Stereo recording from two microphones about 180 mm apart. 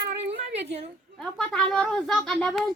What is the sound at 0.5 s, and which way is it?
Speech, 35° right (ahead or behind).